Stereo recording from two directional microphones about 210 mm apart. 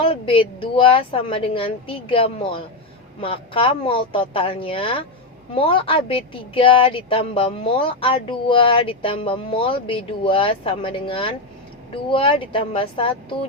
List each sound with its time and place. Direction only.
0.0 s a woman's voice: 25° left (ahead or behind)